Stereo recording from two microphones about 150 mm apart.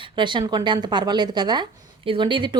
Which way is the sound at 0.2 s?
30° right (ahead or behind).